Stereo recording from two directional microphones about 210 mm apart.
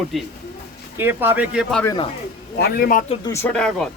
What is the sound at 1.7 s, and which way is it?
Speech, 10° left (ahead or behind).